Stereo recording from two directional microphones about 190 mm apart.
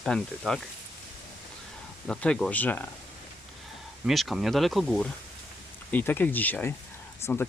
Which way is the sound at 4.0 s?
Centre (ahead or behind).